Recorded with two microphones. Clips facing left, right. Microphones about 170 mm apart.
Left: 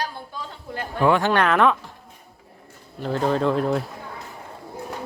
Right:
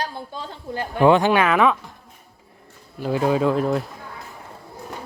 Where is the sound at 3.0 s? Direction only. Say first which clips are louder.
Right 2 dB; 10° right (ahead or behind).